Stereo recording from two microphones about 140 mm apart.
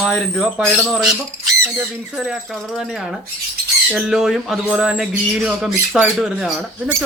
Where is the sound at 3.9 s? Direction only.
5° right (ahead or behind).